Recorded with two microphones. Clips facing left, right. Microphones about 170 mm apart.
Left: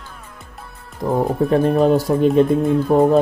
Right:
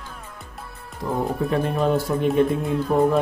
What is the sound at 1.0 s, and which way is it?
Speech, 25° left (ahead or behind).